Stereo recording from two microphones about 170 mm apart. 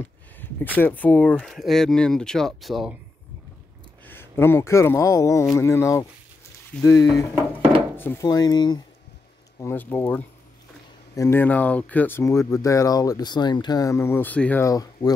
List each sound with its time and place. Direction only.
0.4 s speech: 10° left (ahead or behind)
4.0 s speech: 10° left (ahead or behind)
9.6 s speech: 15° left (ahead or behind)